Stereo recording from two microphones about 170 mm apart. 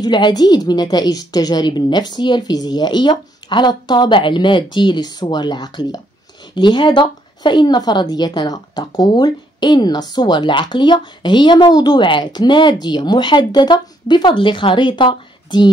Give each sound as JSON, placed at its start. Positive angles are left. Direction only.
{"t": 0.0, "sound": "speech", "side_deg": 25}